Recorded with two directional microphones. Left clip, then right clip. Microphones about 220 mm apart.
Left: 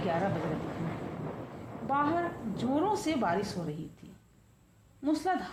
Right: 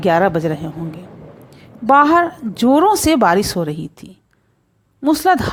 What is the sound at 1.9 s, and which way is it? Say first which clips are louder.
A woman's voice: right 19 dB; 45° right (ahead or behind).